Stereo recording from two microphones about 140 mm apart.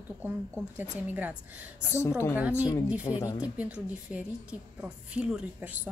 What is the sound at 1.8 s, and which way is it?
Speech, 20° left (ahead or behind).